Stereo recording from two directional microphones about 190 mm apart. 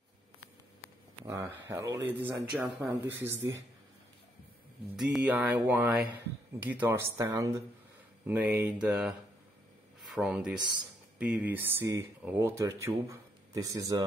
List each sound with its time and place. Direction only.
1.2 s speech: 15° right (ahead or behind)
4.9 s speech: 5° right (ahead or behind)
10.1 s speech: 5° right (ahead or behind)